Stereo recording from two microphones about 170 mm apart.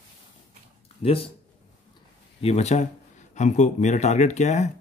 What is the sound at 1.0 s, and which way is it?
Speech, 35° left (ahead or behind).